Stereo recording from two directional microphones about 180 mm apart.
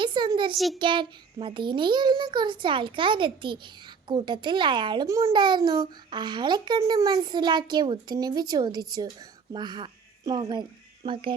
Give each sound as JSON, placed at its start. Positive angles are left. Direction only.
{"t": 0.0, "sound": "speech", "side_deg": -25}
{"t": 0.5, "sound": "a child's voice", "side_deg": 0}
{"t": 0.8, "sound": "a child's voice", "side_deg": -25}